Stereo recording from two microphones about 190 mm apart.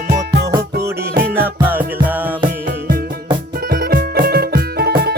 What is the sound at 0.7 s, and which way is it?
Music, 55° right (ahead or behind).